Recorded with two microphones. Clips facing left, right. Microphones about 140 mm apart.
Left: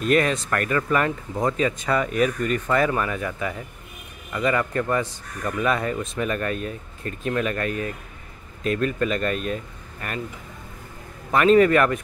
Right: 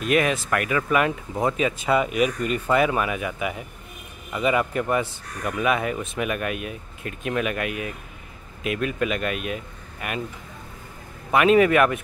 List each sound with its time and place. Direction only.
0.0 s speech: 5° right (ahead or behind)
11.3 s speech: 10° right (ahead or behind)